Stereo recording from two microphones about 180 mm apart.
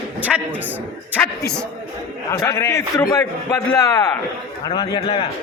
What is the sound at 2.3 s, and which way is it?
A man's voice, 15° left (ahead or behind).